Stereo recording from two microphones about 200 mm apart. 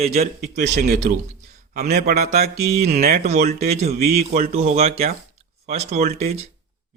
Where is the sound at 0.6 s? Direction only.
50° right (ahead or behind).